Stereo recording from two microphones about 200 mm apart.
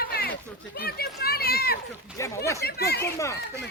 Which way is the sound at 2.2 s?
15° left (ahead or behind).